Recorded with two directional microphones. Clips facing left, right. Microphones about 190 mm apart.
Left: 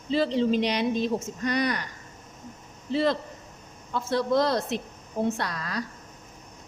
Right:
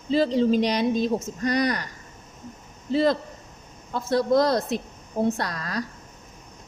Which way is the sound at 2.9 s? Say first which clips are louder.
Right 3 dB; 40° right (ahead or behind).